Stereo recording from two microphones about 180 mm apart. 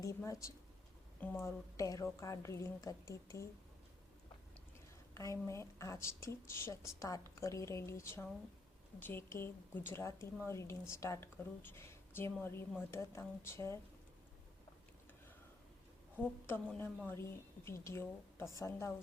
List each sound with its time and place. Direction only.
0.0 s a woman's voice: 15° left (ahead or behind)
5.1 s a woman's voice: 15° left (ahead or behind)
16.1 s a woman's voice: 10° left (ahead or behind)